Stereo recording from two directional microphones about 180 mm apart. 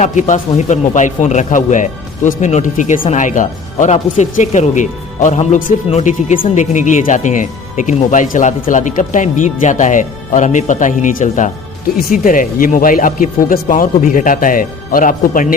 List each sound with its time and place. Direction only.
0.0 s speech: 45° left (ahead or behind)